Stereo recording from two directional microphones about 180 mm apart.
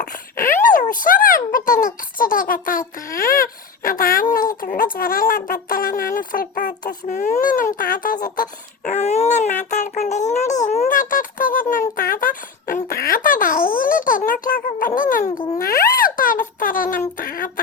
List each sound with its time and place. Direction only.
0.6 s a child's voice: 45° left (ahead or behind)